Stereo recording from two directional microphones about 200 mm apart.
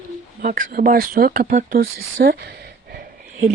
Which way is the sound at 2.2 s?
50° right (ahead or behind).